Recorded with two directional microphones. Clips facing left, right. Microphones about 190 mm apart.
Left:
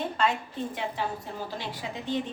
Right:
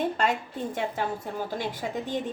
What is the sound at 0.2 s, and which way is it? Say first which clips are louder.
A woman's voice: right 1 dB; 45° right (ahead or behind).